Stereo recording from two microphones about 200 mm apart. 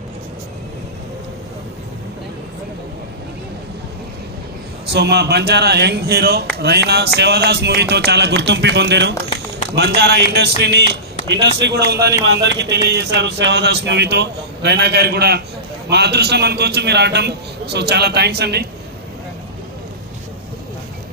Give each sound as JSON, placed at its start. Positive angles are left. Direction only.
{"t": 4.9, "sound": "a man's voice", "side_deg": -55}